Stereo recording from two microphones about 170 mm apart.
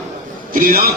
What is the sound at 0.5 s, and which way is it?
Speech, 55° right (ahead or behind).